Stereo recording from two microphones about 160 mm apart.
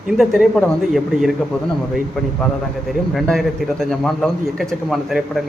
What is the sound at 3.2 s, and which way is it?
A man's voice, centre (ahead or behind).